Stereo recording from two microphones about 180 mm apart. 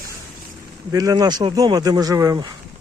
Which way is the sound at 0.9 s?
20° right (ahead or behind).